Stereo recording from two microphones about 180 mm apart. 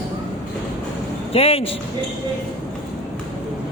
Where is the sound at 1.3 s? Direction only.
35° left (ahead or behind).